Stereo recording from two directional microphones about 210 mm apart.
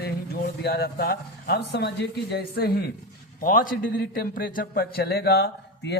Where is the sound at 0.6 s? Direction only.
50° left (ahead or behind).